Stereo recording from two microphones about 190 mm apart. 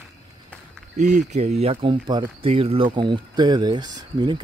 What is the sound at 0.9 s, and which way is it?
Speech, 40° right (ahead or behind).